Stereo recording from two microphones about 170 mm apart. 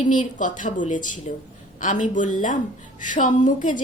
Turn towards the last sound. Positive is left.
turn(degrees=50)  # may be behind; listen again after turning